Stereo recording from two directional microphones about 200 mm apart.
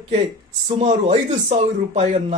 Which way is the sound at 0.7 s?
30° right (ahead or behind).